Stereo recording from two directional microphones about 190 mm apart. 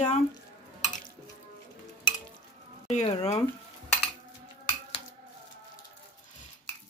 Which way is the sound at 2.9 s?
35° left (ahead or behind).